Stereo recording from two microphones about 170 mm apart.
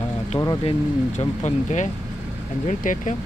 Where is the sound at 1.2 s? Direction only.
45° left (ahead or behind).